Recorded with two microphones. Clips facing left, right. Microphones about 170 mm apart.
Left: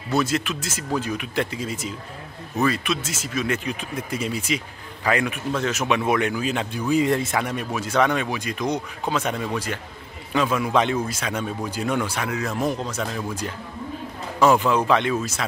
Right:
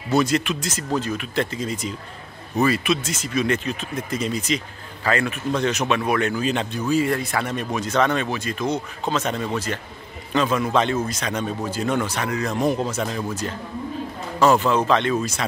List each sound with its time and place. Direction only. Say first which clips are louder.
0.1 s speech: right 3 dB; centre (ahead or behind)
2.5 s speech: right 3 dB; 5° right (ahead or behind)
5.9 s speech: even; 15° left (ahead or behind)
6.9 s speech: left 1 dB; 20° left (ahead or behind)
12.7 s speech: right 3 dB; 5° right (ahead or behind)
13.3 s speech: right 2 dB; 10° left (ahead or behind)